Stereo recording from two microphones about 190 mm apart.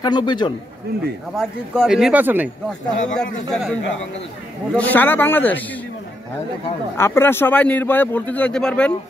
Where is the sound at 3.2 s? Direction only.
5° left (ahead or behind).